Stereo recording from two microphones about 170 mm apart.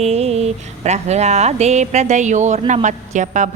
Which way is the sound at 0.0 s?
40° right (ahead or behind).